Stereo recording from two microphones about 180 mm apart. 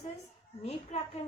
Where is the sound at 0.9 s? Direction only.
40° left (ahead or behind).